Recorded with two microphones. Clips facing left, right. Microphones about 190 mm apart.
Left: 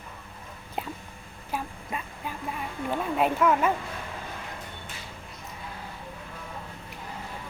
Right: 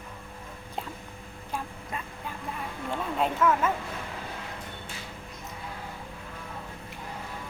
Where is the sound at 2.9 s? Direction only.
10° left (ahead or behind).